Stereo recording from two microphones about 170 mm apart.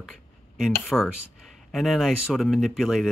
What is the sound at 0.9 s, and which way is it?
Speech, 5° left (ahead or behind).